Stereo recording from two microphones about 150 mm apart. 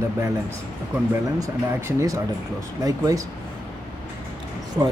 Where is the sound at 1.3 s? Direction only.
20° right (ahead or behind).